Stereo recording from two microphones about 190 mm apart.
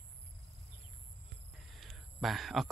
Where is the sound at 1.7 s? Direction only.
Centre (ahead or behind).